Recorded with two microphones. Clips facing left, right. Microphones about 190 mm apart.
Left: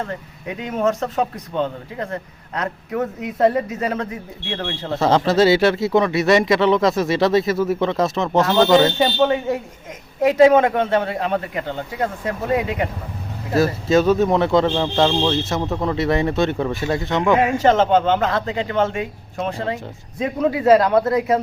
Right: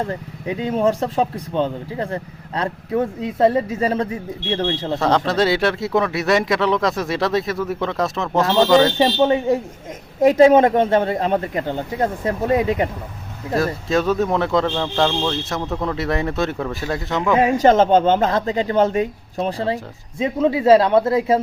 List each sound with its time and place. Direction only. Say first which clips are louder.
0.4 s a man's voice: right 2 dB; 30° right (ahead or behind)
2.6 s speech: right 2 dB; 30° right (ahead or behind)
4.9 s speech: left 4 dB; centre (ahead or behind)
9.0 s a man's voice: right 1 dB; 30° right (ahead or behind)
13.6 s speech: left 4 dB; centre (ahead or behind)
17.4 s a man's voice: right 2 dB; 35° right (ahead or behind)